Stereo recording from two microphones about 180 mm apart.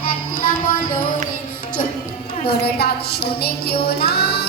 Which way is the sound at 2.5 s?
60° left (ahead or behind).